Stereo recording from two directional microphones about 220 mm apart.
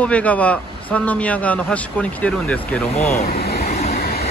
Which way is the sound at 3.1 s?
45° left (ahead or behind).